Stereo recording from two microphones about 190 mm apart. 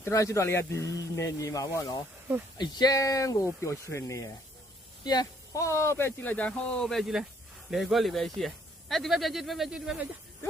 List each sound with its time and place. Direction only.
0.0 s speech: 15° left (ahead or behind); by 10.1 s 5° right (ahead or behind)